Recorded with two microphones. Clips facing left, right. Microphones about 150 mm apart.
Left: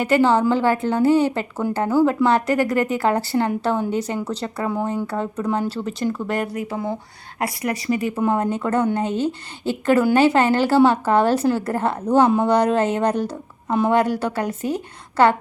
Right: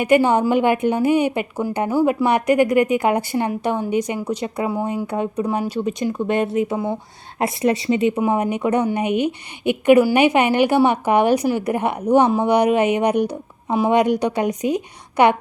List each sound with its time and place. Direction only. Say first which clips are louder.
0.0 s a woman's voice: right 1 dB; 15° right (ahead or behind)